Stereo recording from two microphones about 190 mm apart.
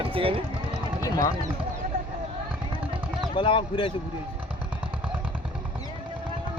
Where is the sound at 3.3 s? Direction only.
25° left (ahead or behind).